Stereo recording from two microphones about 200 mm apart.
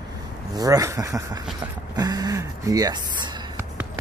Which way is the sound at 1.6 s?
20° right (ahead or behind).